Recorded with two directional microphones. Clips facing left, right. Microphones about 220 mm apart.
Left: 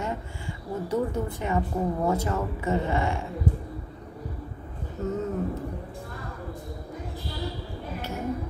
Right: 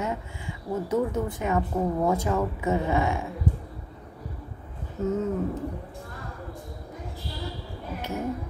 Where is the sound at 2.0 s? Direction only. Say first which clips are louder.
Right 2 dB; 10° right (ahead or behind).